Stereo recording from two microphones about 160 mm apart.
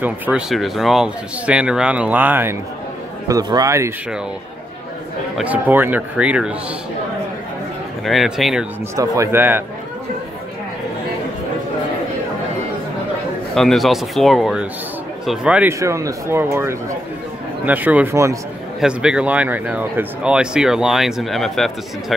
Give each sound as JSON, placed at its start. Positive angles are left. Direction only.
{"t": 0.0, "sound": "speech", "side_deg": -5}
{"t": 3.3, "sound": "speech", "side_deg": -25}
{"t": 5.4, "sound": "speech", "side_deg": -10}
{"t": 8.0, "sound": "speech", "side_deg": 0}
{"t": 8.9, "sound": "speech", "side_deg": -20}
{"t": 13.6, "sound": "speech", "side_deg": 0}
{"t": 15.8, "sound": "speech", "side_deg": -20}
{"t": 18.8, "sound": "speech", "side_deg": -5}